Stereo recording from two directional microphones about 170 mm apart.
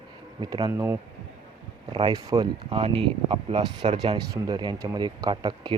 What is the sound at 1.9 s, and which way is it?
Speech, 25° right (ahead or behind).